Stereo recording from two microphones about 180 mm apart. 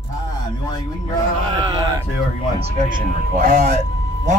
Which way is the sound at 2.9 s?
50° right (ahead or behind).